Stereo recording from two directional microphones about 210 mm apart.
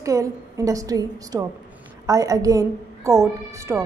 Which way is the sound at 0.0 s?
15° right (ahead or behind).